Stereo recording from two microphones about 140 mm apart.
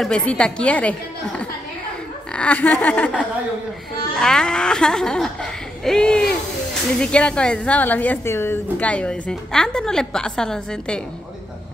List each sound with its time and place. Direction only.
0.0 s a woman's voice: 5° left (ahead or behind)
2.3 s a woman's voice: 10° left (ahead or behind)
4.2 s a woman's voice: 5° left (ahead or behind)